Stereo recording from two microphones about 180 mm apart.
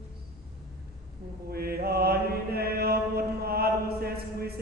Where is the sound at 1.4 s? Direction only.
60° right (ahead or behind).